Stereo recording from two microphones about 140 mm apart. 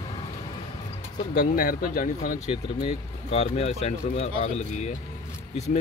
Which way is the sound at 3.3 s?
45° left (ahead or behind).